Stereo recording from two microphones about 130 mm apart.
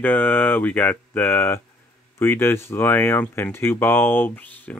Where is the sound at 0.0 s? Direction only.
15° left (ahead or behind).